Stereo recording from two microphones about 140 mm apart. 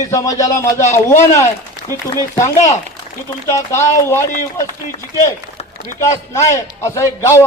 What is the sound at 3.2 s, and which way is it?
A man's voice, 20° left (ahead or behind).